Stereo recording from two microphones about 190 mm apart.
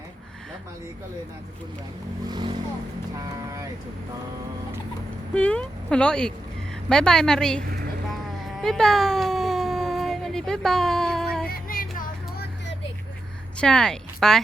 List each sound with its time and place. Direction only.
2.2 s speech: 25° right (ahead or behind)
5.3 s speech: 5° left (ahead or behind)
8.1 s whimper: centre (ahead or behind)
11.4 s music: 50° left (ahead or behind)
13.6 s speech: 5° left (ahead or behind)